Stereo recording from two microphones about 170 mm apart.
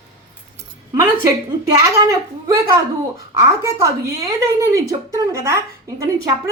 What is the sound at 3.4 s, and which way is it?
A woman's voice, 20° right (ahead or behind).